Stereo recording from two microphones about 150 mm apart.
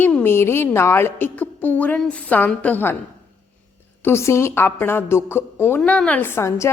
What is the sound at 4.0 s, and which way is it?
A woman's voice, 15° left (ahead or behind).